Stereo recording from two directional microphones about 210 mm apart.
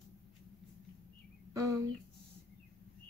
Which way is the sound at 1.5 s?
15° right (ahead or behind).